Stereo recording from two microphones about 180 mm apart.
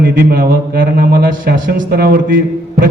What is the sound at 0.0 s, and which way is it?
A man's voice, 55° right (ahead or behind).